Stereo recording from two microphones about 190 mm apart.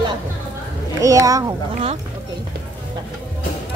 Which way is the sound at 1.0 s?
20° right (ahead or behind).